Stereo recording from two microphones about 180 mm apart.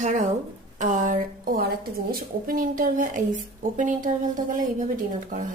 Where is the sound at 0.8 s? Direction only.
45° right (ahead or behind).